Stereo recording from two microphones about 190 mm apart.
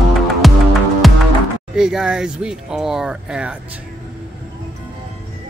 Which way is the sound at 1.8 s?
5° right (ahead or behind).